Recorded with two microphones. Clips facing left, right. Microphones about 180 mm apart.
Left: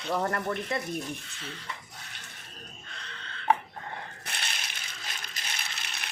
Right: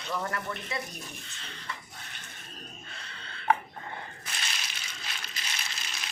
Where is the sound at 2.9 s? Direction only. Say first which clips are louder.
Left 1 dB; 10° right (ahead or behind).